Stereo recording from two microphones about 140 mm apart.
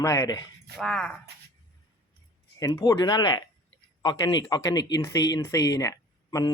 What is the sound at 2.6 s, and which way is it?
Speech, 20° left (ahead or behind).